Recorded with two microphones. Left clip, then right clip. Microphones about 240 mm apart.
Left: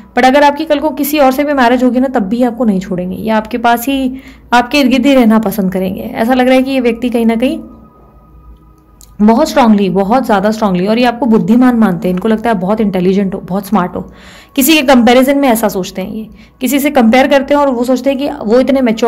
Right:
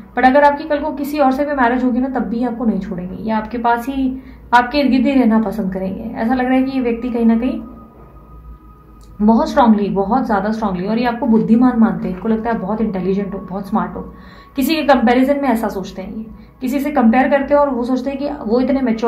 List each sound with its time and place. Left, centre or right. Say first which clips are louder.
0.1 s a woman's voice: left 4 dB; left
9.2 s a woman's voice: left 4 dB; left